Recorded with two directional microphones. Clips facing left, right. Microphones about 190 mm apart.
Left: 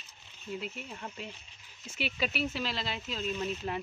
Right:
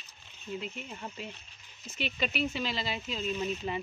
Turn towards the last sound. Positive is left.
turn(degrees=0)  # may be behind; listen again after turning